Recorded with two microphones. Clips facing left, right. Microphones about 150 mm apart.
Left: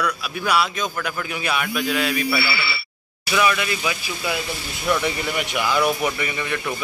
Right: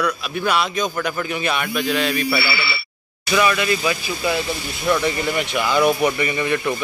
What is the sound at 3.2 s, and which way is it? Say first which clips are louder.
Speech: right 2 dB; 5° left (ahead or behind).